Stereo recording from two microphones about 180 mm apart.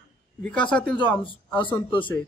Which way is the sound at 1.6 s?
25° left (ahead or behind).